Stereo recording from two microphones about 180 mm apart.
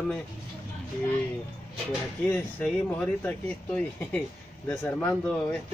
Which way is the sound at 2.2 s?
10° left (ahead or behind).